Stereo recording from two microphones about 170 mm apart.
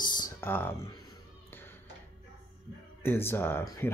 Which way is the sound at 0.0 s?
25° left (ahead or behind).